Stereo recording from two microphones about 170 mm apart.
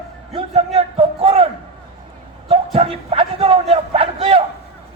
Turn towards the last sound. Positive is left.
turn(degrees=-35)  # may be behind; listen again after turning